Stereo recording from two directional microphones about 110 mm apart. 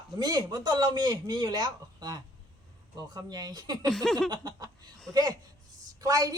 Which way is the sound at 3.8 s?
Centre (ahead or behind).